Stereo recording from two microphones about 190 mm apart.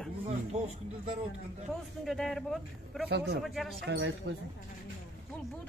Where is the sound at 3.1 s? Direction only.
60° right (ahead or behind).